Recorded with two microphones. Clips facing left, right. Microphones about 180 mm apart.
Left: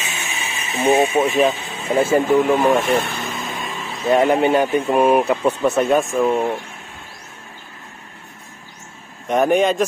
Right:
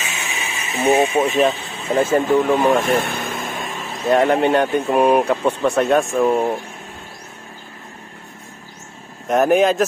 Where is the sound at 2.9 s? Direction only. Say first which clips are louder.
Even; 50° right (ahead or behind).